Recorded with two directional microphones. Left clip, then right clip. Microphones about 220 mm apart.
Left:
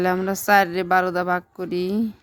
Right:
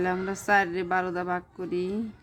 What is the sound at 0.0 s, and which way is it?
A woman's voice, 50° left (ahead or behind).